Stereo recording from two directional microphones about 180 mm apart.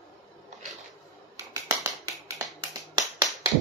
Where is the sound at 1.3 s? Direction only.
15° right (ahead or behind).